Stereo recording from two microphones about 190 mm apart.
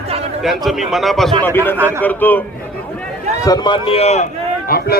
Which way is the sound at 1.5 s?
10° left (ahead or behind).